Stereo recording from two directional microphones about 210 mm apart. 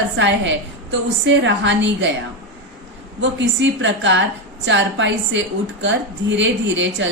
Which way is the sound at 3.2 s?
60° right (ahead or behind).